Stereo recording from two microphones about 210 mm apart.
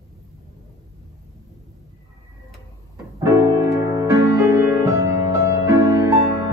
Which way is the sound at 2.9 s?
15° right (ahead or behind).